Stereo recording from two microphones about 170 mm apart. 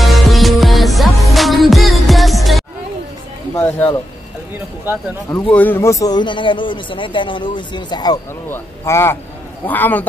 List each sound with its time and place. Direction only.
0.0 s music: centre (ahead or behind)
3.5 s a sound: 10° left (ahead or behind)
5.5 s a man's voice: 10° left (ahead or behind)
8.5 s speech: 15° left (ahead or behind)